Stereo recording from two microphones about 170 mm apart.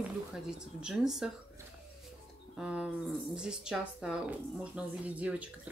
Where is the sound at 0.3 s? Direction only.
5° right (ahead or behind).